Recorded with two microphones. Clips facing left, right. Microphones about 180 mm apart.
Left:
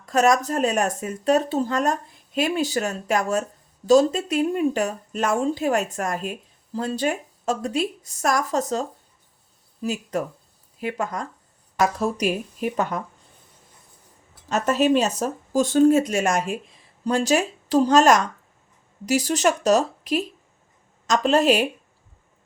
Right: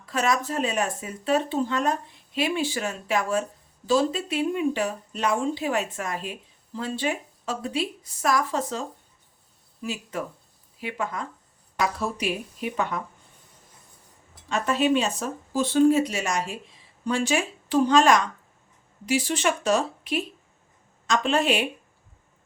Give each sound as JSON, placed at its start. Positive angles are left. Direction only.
{"t": 0.0, "sound": "speech", "side_deg": 45}
{"t": 14.5, "sound": "speech", "side_deg": 40}
{"t": 17.1, "sound": "speech", "side_deg": 40}